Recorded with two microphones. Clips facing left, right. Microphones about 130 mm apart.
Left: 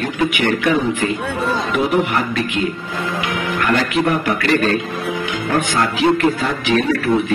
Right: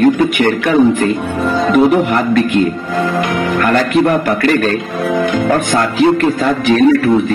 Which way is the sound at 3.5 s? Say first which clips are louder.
Right 5 dB; 45° right (ahead or behind).